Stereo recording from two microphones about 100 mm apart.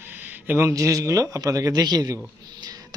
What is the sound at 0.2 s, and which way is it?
Speech, 20° right (ahead or behind).